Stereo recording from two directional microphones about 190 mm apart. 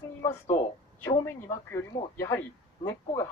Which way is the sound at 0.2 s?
15° left (ahead or behind).